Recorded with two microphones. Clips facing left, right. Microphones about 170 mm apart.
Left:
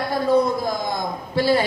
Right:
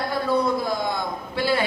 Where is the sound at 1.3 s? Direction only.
40° left (ahead or behind).